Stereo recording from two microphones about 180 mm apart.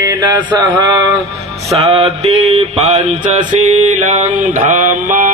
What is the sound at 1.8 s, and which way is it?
Mantra, 35° right (ahead or behind).